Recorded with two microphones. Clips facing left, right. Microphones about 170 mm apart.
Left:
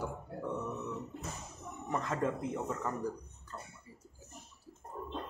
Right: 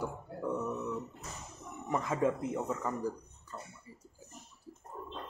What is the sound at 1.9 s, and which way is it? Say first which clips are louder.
Speech: right 3 dB; 10° right (ahead or behind).